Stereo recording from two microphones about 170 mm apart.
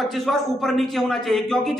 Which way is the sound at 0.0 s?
Centre (ahead or behind).